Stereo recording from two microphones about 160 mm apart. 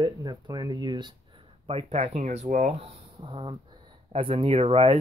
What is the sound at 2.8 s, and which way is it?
Speech, 30° right (ahead or behind).